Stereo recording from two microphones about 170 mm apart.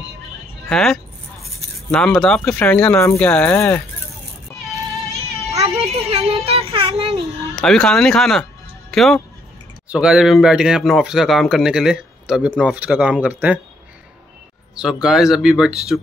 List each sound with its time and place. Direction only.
0.7 s speech: 5° left (ahead or behind)
5.5 s a sound: 40° right (ahead or behind)
7.5 s speech: 5° left (ahead or behind)
14.8 s speech: 5° right (ahead or behind)